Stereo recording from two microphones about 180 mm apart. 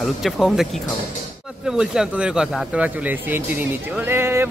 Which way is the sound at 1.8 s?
5° right (ahead or behind).